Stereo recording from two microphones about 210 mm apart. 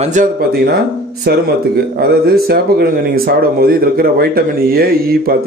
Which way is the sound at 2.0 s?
45° right (ahead or behind).